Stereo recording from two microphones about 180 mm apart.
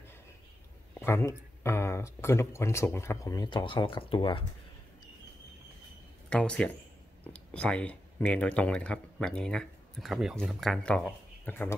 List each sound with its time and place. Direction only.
0.9 s speech: 15° left (ahead or behind); by 4.5 s 30° left (ahead or behind)
6.3 s speech: 5° left (ahead or behind)